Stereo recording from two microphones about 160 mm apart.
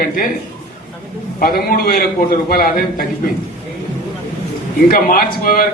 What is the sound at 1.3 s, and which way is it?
A man's voice, 65° left (ahead or behind).